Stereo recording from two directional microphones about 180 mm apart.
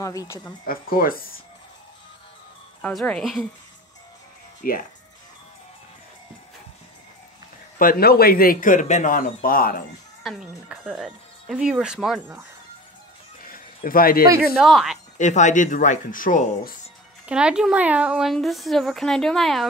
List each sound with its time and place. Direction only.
0.0 s a woman's voice: 20° left (ahead or behind)
0.7 s speech: 55° left (ahead or behind)
2.8 s a woman's voice: 5° left (ahead or behind)
4.6 s speech: 50° left (ahead or behind)
7.8 s speech: 55° left (ahead or behind)
10.2 s a woman's voice: 5° right (ahead or behind)
13.8 s speech: 55° left (ahead or behind)
14.6 s a woman's voice: centre (ahead or behind)
15.1 s speech: 40° left (ahead or behind)
17.3 s a woman's voice: 5° right (ahead or behind)